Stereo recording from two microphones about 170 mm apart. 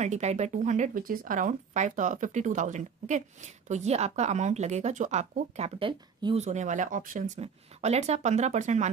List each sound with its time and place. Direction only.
0.0 s speech: 40° right (ahead or behind)